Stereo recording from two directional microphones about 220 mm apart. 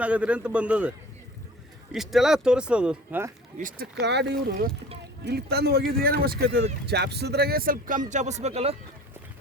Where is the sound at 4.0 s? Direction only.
50° right (ahead or behind); by 8.8 s 30° right (ahead or behind).